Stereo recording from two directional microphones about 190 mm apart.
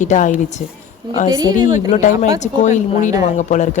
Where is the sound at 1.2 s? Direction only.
20° right (ahead or behind).